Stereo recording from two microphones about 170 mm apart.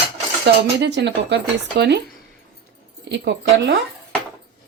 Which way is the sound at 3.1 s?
90° right.